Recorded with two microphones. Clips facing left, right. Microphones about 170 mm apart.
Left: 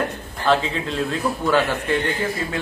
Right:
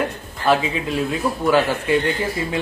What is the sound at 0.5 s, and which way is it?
Speech, 10° right (ahead or behind).